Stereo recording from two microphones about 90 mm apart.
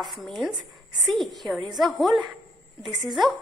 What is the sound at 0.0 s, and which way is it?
A woman's voice, centre (ahead or behind).